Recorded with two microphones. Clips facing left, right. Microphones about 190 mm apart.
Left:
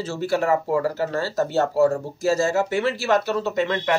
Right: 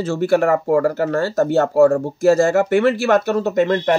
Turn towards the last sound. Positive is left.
turn(degrees=-40)  # may be behind; listen again after turning